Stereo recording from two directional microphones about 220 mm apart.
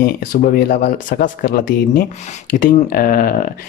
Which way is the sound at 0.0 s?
40° left (ahead or behind).